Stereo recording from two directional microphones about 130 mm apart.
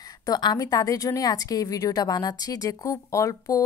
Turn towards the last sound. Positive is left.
turn(degrees=25)  # may be behind; listen again after turning